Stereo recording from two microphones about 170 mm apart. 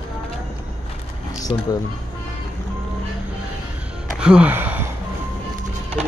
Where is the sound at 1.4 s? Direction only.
25° left (ahead or behind).